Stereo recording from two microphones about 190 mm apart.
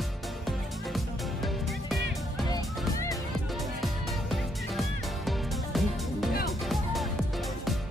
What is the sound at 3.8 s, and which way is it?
Music, centre (ahead or behind).